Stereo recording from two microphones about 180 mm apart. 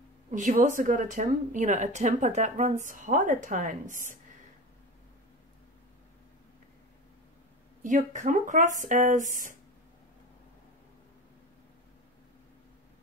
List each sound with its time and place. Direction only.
0.3 s a woman's voice: 45° right (ahead or behind)
7.8 s a woman's voice: 45° right (ahead or behind)